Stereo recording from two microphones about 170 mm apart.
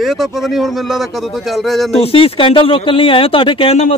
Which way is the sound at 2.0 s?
35° left (ahead or behind).